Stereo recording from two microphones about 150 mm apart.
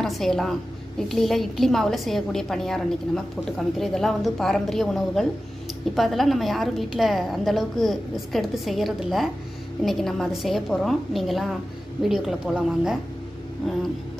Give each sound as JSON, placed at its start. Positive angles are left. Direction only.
{"t": 0.0, "sound": "a woman's voice", "side_deg": 0}